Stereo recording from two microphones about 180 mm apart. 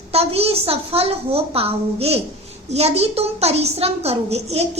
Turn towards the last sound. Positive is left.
turn(degrees=-35)  # may be behind; listen again after turning